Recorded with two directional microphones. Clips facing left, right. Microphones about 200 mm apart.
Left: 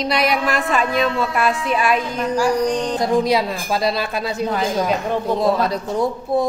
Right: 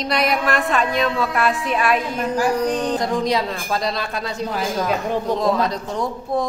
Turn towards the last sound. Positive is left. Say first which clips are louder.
# left 4 dB
turn(degrees=5)  # may be behind; listen again after turning